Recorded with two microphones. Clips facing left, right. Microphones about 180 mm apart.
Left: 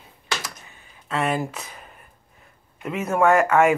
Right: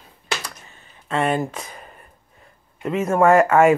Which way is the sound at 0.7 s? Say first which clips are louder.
Right 3 dB; 15° left (ahead or behind).